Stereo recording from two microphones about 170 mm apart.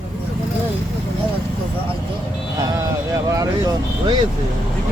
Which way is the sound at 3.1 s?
20° right (ahead or behind).